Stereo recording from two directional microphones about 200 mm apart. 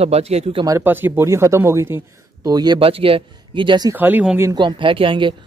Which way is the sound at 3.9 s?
10° right (ahead or behind).